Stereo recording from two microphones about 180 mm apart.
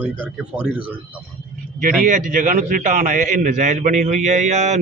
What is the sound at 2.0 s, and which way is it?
A man's voice, 45° right (ahead or behind).